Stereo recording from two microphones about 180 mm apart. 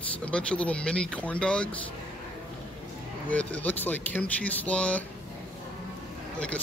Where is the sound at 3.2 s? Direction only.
10° left (ahead or behind).